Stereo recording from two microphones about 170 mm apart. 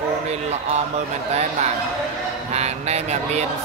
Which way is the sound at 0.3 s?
40° right (ahead or behind).